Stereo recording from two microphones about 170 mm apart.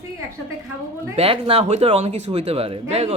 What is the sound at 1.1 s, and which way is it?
A man's voice, 35° right (ahead or behind).